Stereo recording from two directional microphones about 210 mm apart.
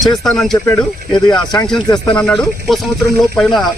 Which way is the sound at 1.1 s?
20° left (ahead or behind).